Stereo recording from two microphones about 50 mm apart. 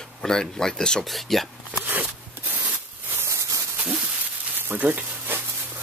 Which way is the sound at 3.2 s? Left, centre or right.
Right.